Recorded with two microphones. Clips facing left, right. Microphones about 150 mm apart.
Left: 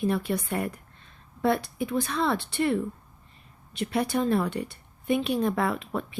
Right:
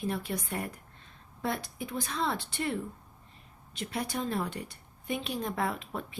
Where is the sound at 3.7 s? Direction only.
65° left (ahead or behind).